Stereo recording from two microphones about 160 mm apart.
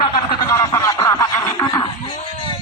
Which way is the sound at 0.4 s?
20° left (ahead or behind).